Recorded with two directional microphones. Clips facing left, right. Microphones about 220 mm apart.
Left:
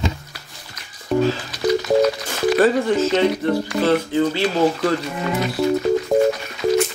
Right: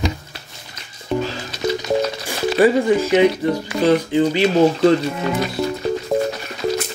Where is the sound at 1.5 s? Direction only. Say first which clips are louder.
Right 1 dB; 20° right (ahead or behind).